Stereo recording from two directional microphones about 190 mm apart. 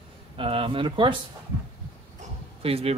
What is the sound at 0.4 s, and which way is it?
Speech, 30° right (ahead or behind).